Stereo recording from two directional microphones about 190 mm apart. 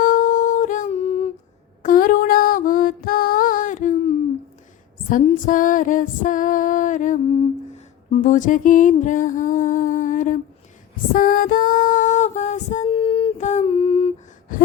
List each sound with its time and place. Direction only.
0.0 s humming: 45° left (ahead or behind)
1.8 s music: 45° left (ahead or behind)
5.0 s female singing: 45° left (ahead or behind)
8.1 s a sound: 40° left (ahead or behind)
11.1 s female singing: 45° left (ahead or behind); by 14.1 s 30° left (ahead or behind)